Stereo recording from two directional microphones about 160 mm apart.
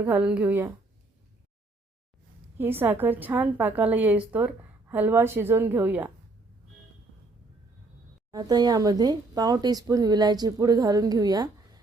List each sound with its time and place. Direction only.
0.0 s a woman's voice: 5° right (ahead or behind)
2.6 s a woman's voice: 15° right (ahead or behind)
8.3 s speech: 25° right (ahead or behind)